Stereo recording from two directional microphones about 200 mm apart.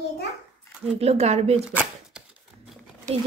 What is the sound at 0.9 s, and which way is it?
Speech, 30° right (ahead or behind).